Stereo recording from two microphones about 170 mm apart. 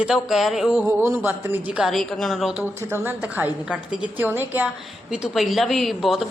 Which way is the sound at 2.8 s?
15° right (ahead or behind).